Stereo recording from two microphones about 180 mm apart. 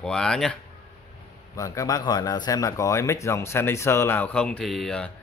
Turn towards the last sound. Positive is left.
turn(degrees=5)  # may be behind; listen again after turning